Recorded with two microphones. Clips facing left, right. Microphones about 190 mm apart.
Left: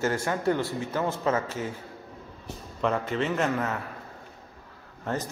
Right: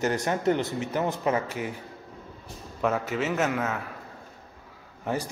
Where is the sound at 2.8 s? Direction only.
5° right (ahead or behind).